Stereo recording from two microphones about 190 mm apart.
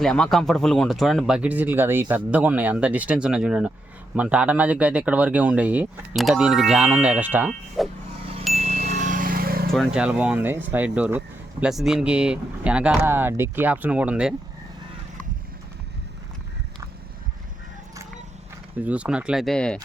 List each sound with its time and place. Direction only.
0.0 s speech: centre (ahead or behind)
8.5 s a sound: 35° right (ahead or behind); by 9.6 s 50° right (ahead or behind)
9.7 s speech: centre (ahead or behind)
18.8 s speech: 5° right (ahead or behind)